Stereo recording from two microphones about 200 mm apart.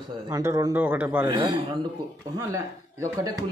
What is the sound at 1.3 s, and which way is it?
A man's voice, 20° right (ahead or behind).